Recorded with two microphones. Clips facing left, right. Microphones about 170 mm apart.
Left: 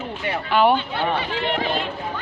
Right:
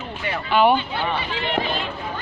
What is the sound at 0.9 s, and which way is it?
Speech, 50° left (ahead or behind).